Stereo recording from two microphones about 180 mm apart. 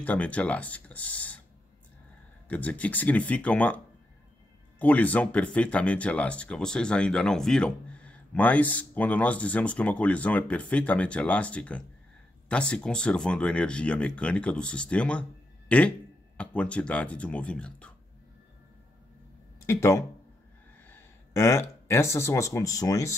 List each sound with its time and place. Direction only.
0.0 s speech: 10° left (ahead or behind)
2.4 s speech: 10° left (ahead or behind)
19.6 s speech: 15° left (ahead or behind)